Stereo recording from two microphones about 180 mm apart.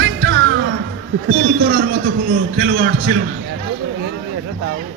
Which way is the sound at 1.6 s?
90° right.